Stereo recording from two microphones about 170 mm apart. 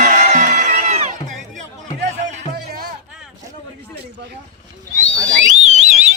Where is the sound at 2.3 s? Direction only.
60° right (ahead or behind).